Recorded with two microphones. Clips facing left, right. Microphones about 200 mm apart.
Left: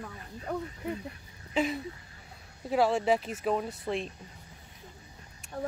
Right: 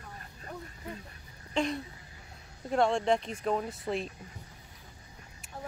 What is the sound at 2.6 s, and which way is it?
Speech, 5° left (ahead or behind).